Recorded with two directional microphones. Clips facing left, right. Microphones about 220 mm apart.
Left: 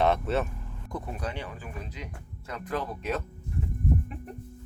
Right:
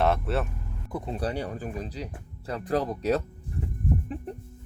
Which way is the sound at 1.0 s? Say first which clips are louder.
Right 8 dB; 30° right (ahead or behind).